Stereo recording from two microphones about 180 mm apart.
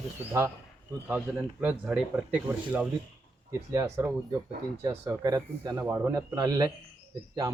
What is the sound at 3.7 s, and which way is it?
Speech, 15° right (ahead or behind).